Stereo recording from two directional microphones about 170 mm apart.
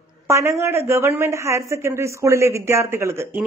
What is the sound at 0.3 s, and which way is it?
A woman's voice, 15° right (ahead or behind).